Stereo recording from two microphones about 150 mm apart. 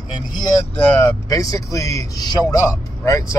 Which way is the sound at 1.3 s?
20° left (ahead or behind).